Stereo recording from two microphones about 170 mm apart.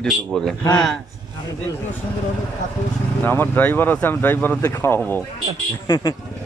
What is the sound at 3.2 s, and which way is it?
Speech, 10° left (ahead or behind).